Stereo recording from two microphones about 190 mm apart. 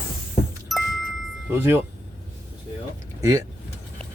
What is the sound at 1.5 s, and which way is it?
Speech, 10° right (ahead or behind).